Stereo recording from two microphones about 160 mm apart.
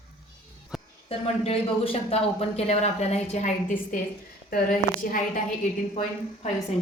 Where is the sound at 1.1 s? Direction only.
35° left (ahead or behind); by 5.2 s 60° left (ahead or behind).